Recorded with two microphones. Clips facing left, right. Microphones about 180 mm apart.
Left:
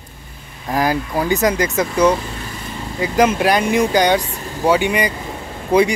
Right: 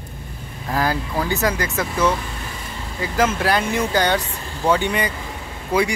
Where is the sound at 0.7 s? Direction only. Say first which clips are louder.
Left 3 dB; 15° left (ahead or behind).